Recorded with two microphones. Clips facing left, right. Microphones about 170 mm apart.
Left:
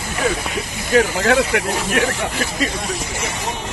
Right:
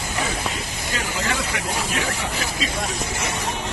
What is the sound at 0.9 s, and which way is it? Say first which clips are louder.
Speech: left 12 dB; 65° left (ahead or behind).